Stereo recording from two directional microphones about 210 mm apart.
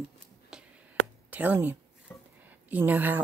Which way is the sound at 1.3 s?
10° right (ahead or behind).